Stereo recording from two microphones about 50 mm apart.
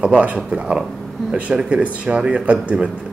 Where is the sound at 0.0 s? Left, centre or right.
Right.